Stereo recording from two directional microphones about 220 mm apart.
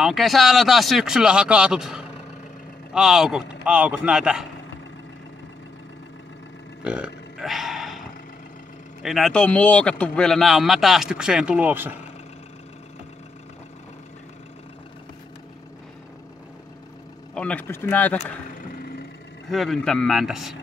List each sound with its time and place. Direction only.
0.0 s speech: centre (ahead or behind)
6.8 s burping: 5° right (ahead or behind)
9.0 s speech: centre (ahead or behind)
17.3 s speech: 5° left (ahead or behind)
18.8 s vehicle: 45° left (ahead or behind)
19.5 s speech: centre (ahead or behind)